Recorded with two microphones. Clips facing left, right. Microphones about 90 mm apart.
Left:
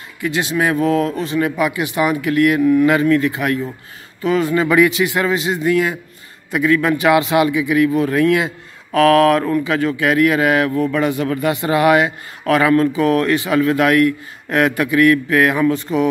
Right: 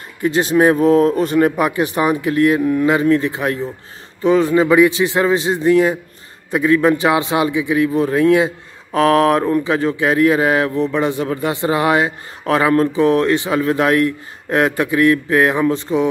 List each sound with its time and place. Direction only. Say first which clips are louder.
0.2 s speech: right 5 dB; 40° right (ahead or behind)
1.2 s speech: right 3 dB; 45° right (ahead or behind); by 16.1 s 25° right (ahead or behind)